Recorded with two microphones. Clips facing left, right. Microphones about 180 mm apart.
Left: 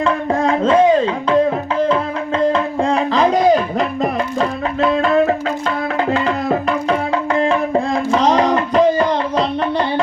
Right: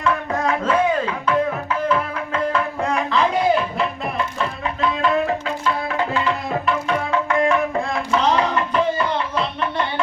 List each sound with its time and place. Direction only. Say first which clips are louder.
0.0 s music: left 5 dB; 30° left (ahead or behind); by 5.3 s 45° left (ahead or behind)
6.2 s tabla: left 5 dB; 40° left (ahead or behind)